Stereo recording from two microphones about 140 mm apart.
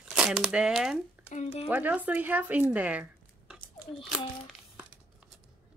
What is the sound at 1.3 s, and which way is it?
Speech, 55° left (ahead or behind).